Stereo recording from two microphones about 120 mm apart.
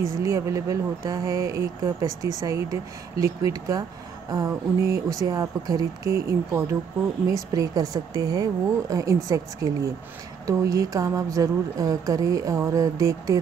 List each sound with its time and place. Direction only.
0.2 s speech: 25° right (ahead or behind)